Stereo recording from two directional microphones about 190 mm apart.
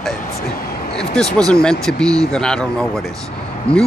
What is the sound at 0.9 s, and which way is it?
Speech, 5° left (ahead or behind).